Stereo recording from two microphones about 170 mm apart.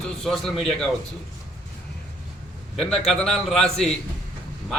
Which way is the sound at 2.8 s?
5° left (ahead or behind).